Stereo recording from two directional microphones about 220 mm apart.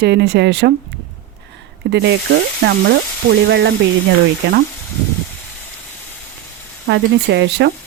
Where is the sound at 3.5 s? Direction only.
50° right (ahead or behind).